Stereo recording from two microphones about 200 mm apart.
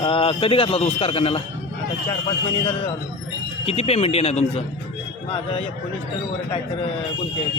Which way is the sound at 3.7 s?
30° left (ahead or behind).